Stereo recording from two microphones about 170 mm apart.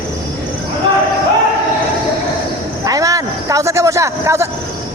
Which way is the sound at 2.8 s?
20° right (ahead or behind).